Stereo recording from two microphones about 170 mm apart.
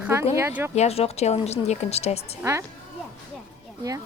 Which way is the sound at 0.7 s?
40° left (ahead or behind).